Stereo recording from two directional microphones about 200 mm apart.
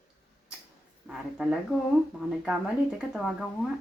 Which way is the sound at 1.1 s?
5° right (ahead or behind).